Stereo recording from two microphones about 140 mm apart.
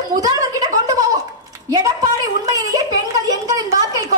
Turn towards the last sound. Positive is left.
turn(degrees=-25)  # may be behind; listen again after turning